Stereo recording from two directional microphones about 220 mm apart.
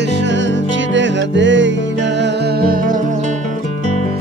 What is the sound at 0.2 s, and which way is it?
Music, 55° right (ahead or behind).